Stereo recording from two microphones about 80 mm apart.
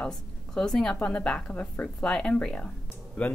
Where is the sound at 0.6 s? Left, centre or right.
Centre.